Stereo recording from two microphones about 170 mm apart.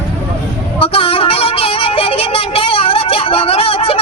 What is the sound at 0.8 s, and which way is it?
Music, 30° left (ahead or behind).